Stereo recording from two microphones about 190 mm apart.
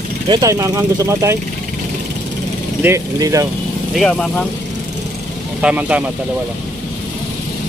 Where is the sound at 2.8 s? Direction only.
15° right (ahead or behind).